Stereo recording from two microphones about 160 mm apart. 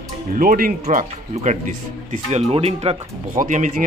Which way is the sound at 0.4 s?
65° right (ahead or behind).